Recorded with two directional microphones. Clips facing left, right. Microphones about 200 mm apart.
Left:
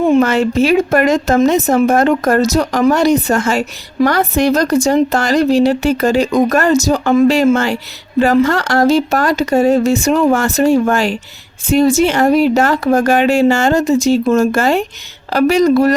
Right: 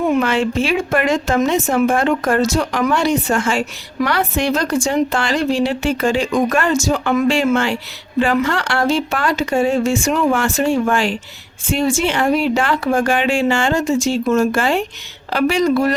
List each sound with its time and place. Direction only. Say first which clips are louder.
0.2 s speech: left 5 dB; 40° left (ahead or behind)